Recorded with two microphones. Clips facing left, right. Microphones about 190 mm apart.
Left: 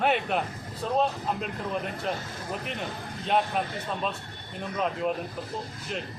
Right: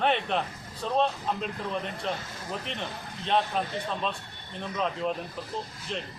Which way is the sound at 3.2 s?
5° left (ahead or behind).